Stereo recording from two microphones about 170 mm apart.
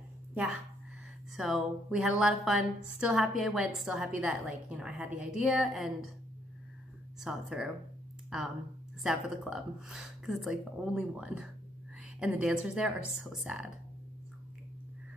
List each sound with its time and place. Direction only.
0.3 s a woman's voice: 5° right (ahead or behind)
7.2 s a woman's voice: 5° right (ahead or behind)
9.0 s a woman's voice: centre (ahead or behind)